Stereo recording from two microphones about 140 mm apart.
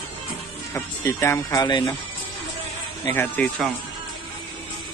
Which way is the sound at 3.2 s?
10° left (ahead or behind).